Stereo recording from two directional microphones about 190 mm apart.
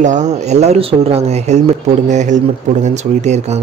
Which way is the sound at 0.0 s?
40° right (ahead or behind).